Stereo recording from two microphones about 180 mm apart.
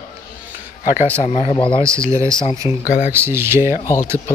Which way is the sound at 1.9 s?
15° right (ahead or behind).